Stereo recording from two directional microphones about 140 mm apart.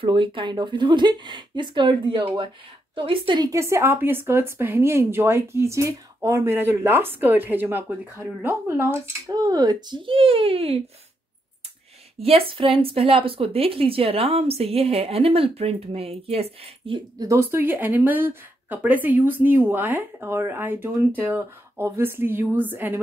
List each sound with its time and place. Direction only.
0.0 s speech: 35° right (ahead or behind)
3.4 s speech: 20° right (ahead or behind); by 10.8 s 45° right (ahead or behind)
12.2 s a woman's voice: 45° right (ahead or behind)
17.2 s speech: 20° right (ahead or behind)